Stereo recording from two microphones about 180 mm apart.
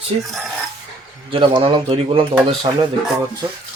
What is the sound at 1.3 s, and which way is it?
Speech, 30° right (ahead or behind).